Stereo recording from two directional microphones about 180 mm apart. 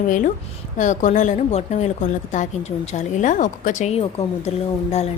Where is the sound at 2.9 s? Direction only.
40° left (ahead or behind).